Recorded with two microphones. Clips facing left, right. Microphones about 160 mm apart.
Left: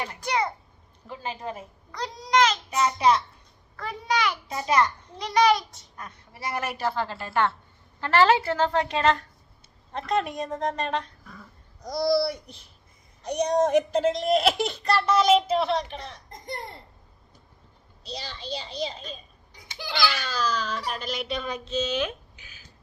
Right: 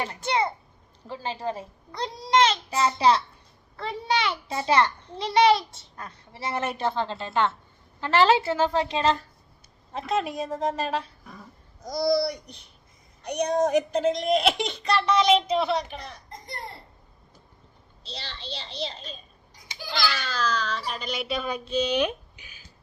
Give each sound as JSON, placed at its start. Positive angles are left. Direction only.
{"t": 0.0, "sound": "a child's voice", "side_deg": -25}
{"t": 8.4, "sound": "a woman's voice", "side_deg": -10}
{"t": 10.1, "sound": "speech", "side_deg": 0}
{"t": 18.1, "sound": "a child's voice", "side_deg": 10}